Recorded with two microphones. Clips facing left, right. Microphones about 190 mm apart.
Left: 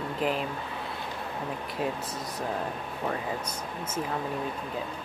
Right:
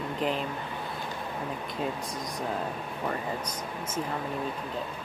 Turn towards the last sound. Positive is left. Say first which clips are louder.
# even
turn(degrees=10)  # may be behind; listen again after turning